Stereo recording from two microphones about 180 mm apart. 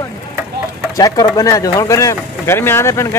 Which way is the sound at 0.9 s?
20° left (ahead or behind).